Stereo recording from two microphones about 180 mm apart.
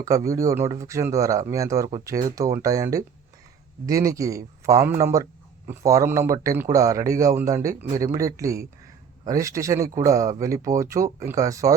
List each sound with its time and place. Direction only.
0.0 s speech: 20° right (ahead or behind)